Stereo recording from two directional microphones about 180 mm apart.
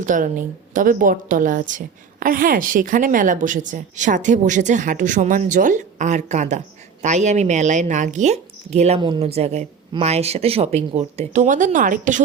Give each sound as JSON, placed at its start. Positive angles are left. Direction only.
{"t": 0.0, "sound": "a woman's voice", "side_deg": -45}